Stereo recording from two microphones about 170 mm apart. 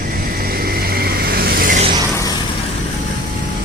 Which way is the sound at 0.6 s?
65° right (ahead or behind).